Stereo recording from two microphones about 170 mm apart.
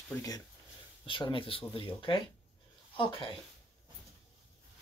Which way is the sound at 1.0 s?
30° left (ahead or behind).